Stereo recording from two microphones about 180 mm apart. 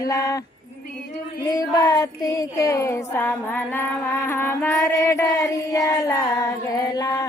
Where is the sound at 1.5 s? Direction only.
20° left (ahead or behind).